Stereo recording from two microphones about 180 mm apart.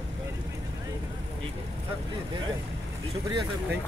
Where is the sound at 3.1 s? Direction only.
25° right (ahead or behind).